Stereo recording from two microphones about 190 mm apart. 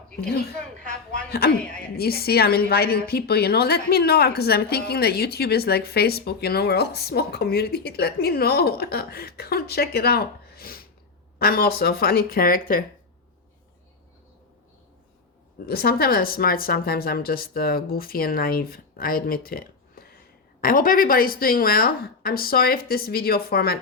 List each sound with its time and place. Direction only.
0.2 s a woman's voice: 55° left (ahead or behind)
1.5 s a woman's voice: 5° left (ahead or behind)
2.0 s a woman's voice: 55° left (ahead or behind)
15.6 s speech: 55° left (ahead or behind)